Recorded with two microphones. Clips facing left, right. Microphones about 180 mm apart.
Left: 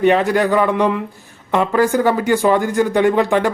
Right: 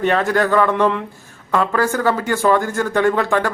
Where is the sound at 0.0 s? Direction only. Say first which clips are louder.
Left 3 dB; 15° left (ahead or behind).